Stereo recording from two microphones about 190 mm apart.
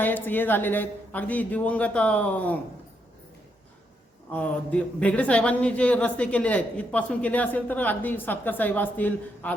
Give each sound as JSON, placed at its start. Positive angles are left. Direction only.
{"t": 0.0, "sound": "speech", "side_deg": 10}
{"t": 4.3, "sound": "speech", "side_deg": 5}